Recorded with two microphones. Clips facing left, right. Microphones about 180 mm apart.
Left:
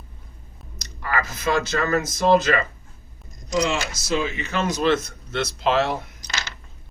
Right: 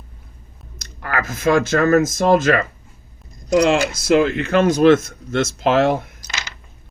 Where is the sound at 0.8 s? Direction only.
50° right (ahead or behind).